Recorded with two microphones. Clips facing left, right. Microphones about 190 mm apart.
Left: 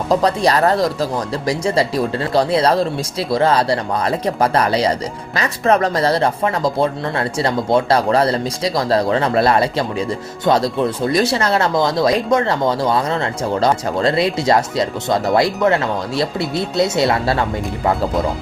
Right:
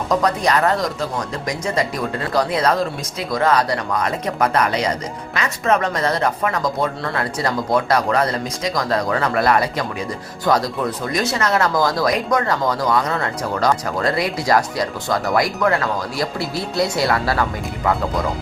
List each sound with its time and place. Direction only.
0.1 s speech: 30° left (ahead or behind)